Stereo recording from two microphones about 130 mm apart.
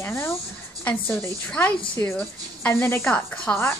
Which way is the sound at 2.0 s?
15° left (ahead or behind).